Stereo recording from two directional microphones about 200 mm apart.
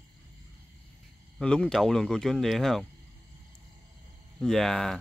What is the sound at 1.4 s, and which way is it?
Speech, 5° left (ahead or behind).